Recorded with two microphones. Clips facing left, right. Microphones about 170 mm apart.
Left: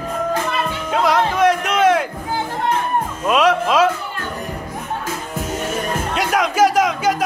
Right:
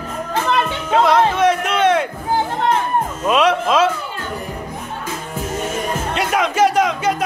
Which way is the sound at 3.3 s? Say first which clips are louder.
Even; centre (ahead or behind).